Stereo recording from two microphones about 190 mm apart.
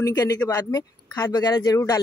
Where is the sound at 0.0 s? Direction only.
20° left (ahead or behind).